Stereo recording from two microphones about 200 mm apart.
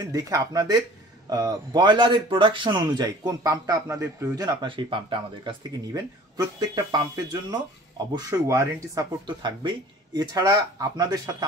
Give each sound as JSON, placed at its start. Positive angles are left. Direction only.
{"t": 0.0, "sound": "speech", "side_deg": -20}